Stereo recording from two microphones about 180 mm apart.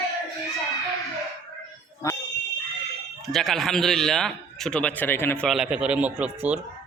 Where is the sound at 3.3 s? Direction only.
Centre (ahead or behind).